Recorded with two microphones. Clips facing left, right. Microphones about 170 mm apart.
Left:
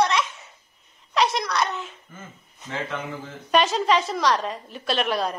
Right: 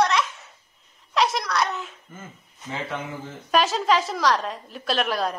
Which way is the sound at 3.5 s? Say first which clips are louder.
Left 1 dB; centre (ahead or behind).